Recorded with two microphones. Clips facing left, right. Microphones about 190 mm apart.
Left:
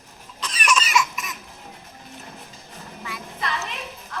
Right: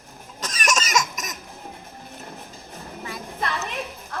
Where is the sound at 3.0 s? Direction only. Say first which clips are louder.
Right 1 dB; 45° right (ahead or behind).